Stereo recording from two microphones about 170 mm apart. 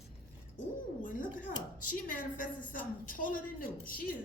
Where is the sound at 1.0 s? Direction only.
50° left (ahead or behind).